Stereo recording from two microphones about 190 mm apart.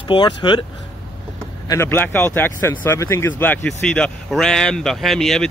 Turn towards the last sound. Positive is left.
turn(degrees=0)  # may be behind; listen again after turning